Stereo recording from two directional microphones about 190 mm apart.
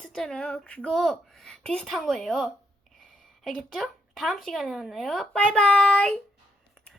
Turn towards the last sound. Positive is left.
turn(degrees=5)  # may be behind; listen again after turning